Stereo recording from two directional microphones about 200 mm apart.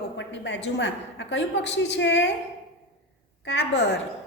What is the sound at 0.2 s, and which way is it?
A woman's voice, 60° left (ahead or behind).